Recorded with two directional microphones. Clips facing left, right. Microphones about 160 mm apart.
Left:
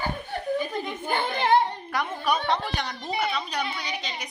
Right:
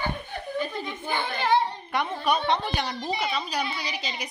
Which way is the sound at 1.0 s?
50° left (ahead or behind).